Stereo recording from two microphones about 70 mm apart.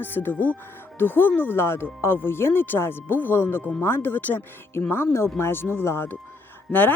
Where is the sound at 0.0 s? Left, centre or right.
Left.